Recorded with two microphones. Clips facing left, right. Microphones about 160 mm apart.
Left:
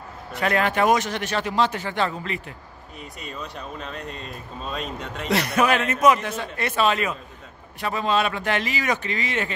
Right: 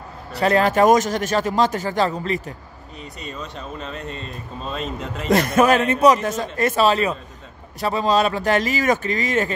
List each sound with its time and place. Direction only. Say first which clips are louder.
0.3 s speech: right 5 dB; 35° right (ahead or behind)
3.2 s speech: right 2 dB; centre (ahead or behind)
5.3 s speech: right 5 dB; 45° right (ahead or behind)